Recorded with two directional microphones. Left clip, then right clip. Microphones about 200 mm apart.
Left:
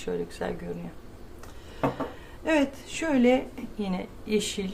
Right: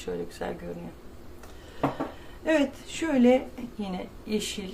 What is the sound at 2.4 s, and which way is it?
Speech, 20° left (ahead or behind).